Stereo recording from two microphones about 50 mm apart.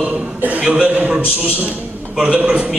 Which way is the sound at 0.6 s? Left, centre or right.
Right.